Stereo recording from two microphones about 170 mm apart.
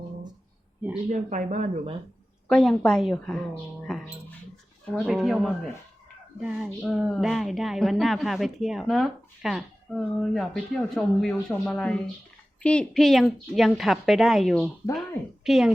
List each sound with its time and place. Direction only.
1.1 s speech: 45° right (ahead or behind)
2.5 s a woman's voice: 5° left (ahead or behind)
3.9 s a sound: 5° left (ahead or behind)
5.0 s a woman's voice: centre (ahead or behind)